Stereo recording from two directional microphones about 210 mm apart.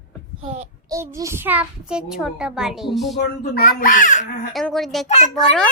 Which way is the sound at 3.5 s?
40° left (ahead or behind).